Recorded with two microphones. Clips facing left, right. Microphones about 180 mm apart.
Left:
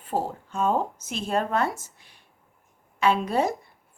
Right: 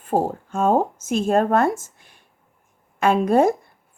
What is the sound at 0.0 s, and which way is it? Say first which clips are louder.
A woman's voice: right 7 dB; 45° right (ahead or behind).